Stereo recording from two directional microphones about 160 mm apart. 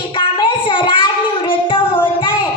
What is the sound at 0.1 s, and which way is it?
Child singing, 30° left (ahead or behind).